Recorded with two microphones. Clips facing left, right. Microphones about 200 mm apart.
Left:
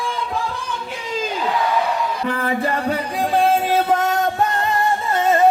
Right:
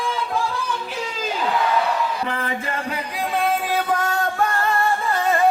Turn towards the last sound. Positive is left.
turn(degrees=20)  # may be behind; listen again after turning